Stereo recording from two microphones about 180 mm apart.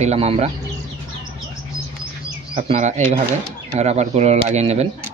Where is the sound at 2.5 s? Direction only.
40° right (ahead or behind).